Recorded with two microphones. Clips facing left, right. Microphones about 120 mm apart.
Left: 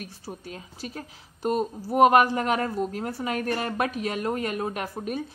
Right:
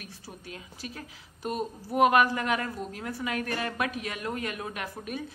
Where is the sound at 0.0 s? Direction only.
35° left (ahead or behind).